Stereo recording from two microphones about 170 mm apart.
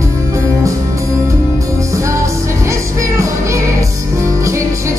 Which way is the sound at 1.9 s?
20° right (ahead or behind).